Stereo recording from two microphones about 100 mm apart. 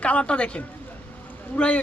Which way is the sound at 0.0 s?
10° left (ahead or behind).